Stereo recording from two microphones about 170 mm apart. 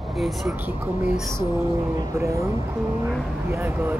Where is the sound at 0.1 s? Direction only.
Centre (ahead or behind).